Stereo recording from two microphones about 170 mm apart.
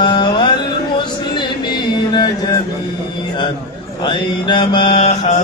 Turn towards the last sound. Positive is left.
turn(degrees=40)  # may be behind; listen again after turning